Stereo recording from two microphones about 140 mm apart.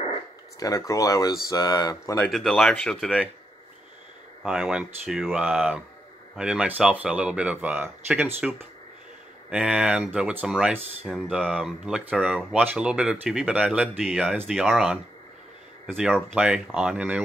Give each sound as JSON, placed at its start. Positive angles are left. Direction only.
{"t": 0.6, "sound": "speech", "side_deg": 25}
{"t": 2.1, "sound": "speech", "side_deg": 0}
{"t": 4.4, "sound": "speech", "side_deg": -5}